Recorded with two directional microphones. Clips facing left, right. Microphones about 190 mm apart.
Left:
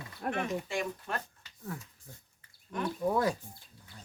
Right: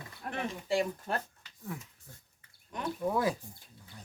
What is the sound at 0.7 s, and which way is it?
Speech, 35° right (ahead or behind).